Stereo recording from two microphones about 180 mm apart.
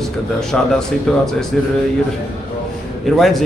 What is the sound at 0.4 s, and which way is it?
Speech, 5° left (ahead or behind).